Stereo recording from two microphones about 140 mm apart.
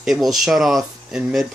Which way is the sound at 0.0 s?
Centre (ahead or behind).